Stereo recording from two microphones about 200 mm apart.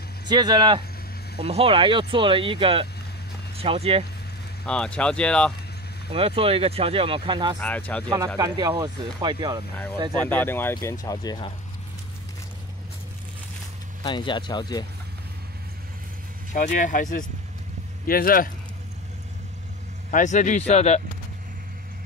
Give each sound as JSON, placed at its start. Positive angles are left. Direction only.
{"t": 0.3, "sound": "speech", "side_deg": -20}
{"t": 4.6, "sound": "speech", "side_deg": 5}
{"t": 6.1, "sound": "speech", "side_deg": -30}
{"t": 7.6, "sound": "speech", "side_deg": 5}
{"t": 8.4, "sound": "speech", "side_deg": -20}
{"t": 10.1, "sound": "speech", "side_deg": 10}
{"t": 14.0, "sound": "speech", "side_deg": 25}
{"t": 16.5, "sound": "speech", "side_deg": 40}
{"t": 20.1, "sound": "speech", "side_deg": 40}